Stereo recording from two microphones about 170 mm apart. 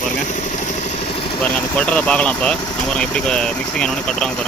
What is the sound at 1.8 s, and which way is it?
Speech, 5° left (ahead or behind).